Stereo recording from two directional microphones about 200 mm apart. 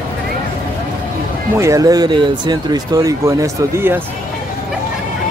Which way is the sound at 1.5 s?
15° right (ahead or behind).